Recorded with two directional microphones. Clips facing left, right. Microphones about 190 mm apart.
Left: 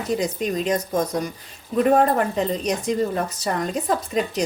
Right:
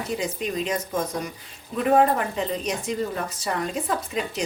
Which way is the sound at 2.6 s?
40° left (ahead or behind).